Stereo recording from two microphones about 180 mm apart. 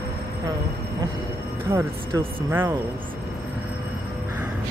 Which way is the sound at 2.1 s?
30° right (ahead or behind).